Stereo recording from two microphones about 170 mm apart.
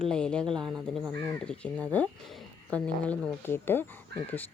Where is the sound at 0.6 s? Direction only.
15° right (ahead or behind).